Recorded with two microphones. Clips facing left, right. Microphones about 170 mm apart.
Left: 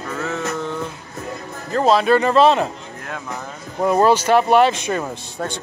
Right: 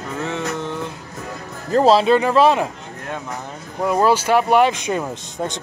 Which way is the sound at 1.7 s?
30° right (ahead or behind).